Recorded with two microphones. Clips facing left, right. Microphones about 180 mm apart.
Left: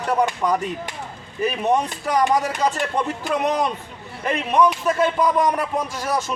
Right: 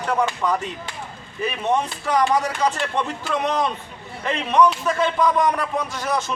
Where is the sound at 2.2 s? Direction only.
15° left (ahead or behind).